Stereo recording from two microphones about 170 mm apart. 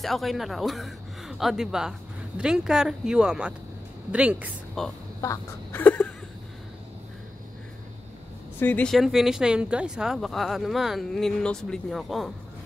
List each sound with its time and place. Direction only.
0.0 s a woman's voice: centre (ahead or behind)
5.2 s speech: 15° left (ahead or behind)
8.5 s speech: 10° left (ahead or behind)